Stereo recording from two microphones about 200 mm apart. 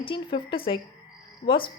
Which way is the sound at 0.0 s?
25° left (ahead or behind).